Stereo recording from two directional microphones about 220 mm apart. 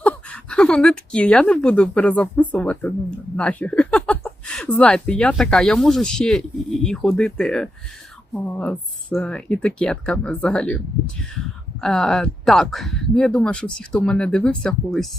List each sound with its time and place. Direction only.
0.0 s speech: 5° left (ahead or behind)